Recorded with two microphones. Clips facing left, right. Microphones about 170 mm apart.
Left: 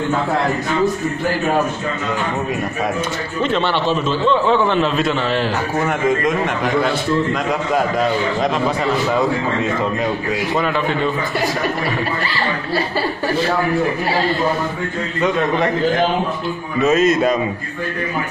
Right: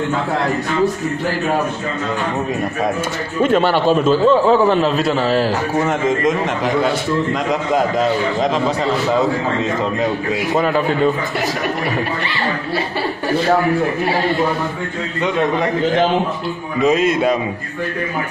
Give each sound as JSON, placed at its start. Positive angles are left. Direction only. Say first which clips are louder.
{"t": 3.4, "sound": "a man's voice", "louder": "right 4 dB", "side_deg": -45}
{"t": 5.9, "sound": "a man's voice", "louder": "left 1 dB", "side_deg": -20}
{"t": 16.8, "sound": "a man's voice", "louder": "even", "side_deg": -15}